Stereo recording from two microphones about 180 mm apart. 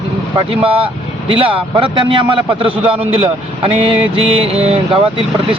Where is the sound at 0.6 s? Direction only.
30° right (ahead or behind).